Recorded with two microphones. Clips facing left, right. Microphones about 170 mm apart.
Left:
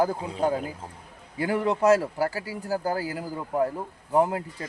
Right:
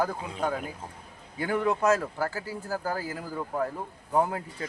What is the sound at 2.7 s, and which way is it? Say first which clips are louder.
Speech: left 5 dB; 35° left (ahead or behind).